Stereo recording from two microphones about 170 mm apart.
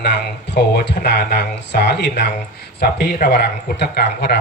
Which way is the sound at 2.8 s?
75° left (ahead or behind).